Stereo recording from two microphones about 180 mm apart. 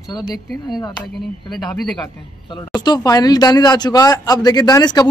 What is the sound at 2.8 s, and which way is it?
Speech, 20° left (ahead or behind).